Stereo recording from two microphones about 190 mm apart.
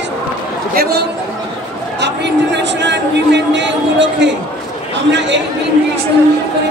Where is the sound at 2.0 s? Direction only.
65° right (ahead or behind).